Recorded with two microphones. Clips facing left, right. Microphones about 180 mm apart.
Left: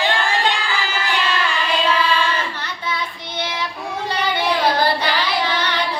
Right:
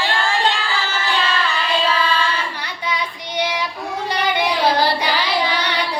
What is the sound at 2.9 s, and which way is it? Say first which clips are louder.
Child singing: right 2 dB; 15° right (ahead or behind).